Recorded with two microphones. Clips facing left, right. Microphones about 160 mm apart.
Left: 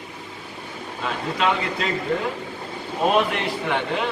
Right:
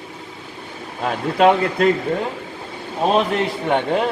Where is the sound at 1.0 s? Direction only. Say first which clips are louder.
Right 8 dB; 50° right (ahead or behind).